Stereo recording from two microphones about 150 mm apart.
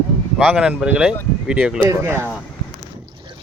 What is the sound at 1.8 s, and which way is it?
Speech, 20° right (ahead or behind).